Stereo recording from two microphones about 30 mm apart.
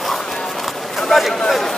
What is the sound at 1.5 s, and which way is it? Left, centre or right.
Speech, centre.